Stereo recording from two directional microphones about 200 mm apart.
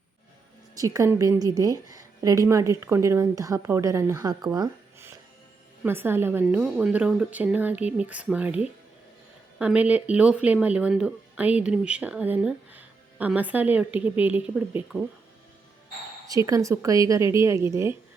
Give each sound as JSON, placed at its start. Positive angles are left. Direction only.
{"t": 0.8, "sound": "speech", "side_deg": -15}
{"t": 4.5, "sound": "a sound", "side_deg": -15}
{"t": 5.8, "sound": "speech", "side_deg": -10}
{"t": 16.5, "sound": "speech", "side_deg": -15}